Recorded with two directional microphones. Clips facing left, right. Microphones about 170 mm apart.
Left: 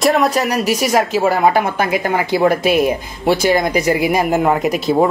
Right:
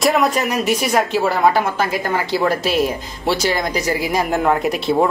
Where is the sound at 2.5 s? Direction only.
50° left (ahead or behind).